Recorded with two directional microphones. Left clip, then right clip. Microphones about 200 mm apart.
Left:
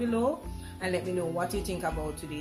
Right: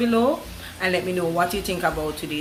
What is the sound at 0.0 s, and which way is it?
A woman's voice, 20° left (ahead or behind).